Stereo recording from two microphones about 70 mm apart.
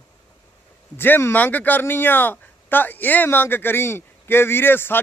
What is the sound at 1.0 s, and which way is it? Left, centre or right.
Speech, left.